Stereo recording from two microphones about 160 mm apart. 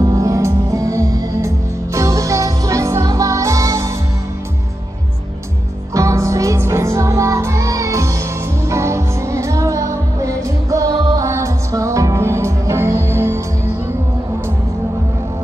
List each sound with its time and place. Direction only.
0.0 s music: 20° right (ahead or behind)
5.9 s music: 20° right (ahead or behind)